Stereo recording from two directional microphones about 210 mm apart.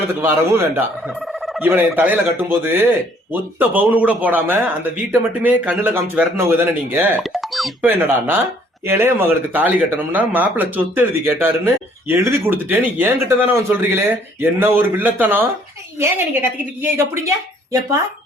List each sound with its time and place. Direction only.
0.1 s speech: 10° right (ahead or behind)
7.2 s speech: centre (ahead or behind)